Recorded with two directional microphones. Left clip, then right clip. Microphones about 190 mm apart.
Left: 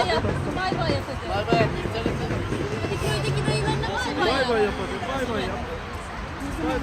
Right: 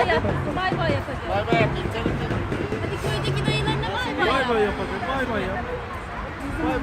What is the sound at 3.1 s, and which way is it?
Music, 45° right (ahead or behind).